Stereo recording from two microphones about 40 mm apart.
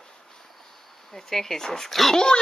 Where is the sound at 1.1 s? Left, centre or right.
Centre.